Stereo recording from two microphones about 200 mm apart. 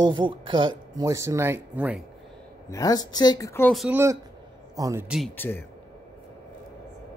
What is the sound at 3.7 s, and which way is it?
Speech, centre (ahead or behind).